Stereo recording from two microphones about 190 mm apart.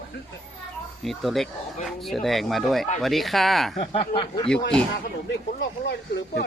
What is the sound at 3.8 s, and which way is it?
Speech, 30° left (ahead or behind).